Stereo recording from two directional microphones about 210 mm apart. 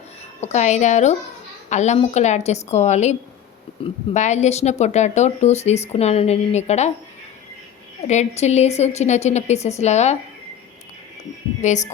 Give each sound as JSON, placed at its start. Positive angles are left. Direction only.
{"t": 0.4, "sound": "speech", "side_deg": 35}
{"t": 8.0, "sound": "speech", "side_deg": 30}
{"t": 11.6, "sound": "speech", "side_deg": 35}